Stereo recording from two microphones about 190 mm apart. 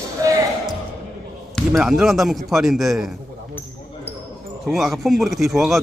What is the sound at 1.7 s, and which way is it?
Speech, centre (ahead or behind).